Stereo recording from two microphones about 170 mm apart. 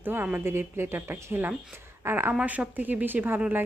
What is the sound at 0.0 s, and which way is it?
A woman's voice, 10° right (ahead or behind).